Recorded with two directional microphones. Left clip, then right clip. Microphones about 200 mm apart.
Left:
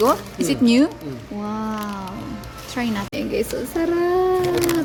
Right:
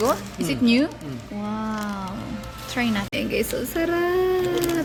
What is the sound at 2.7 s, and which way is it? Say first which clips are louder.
A woman's voice: even; 5° left (ahead or behind).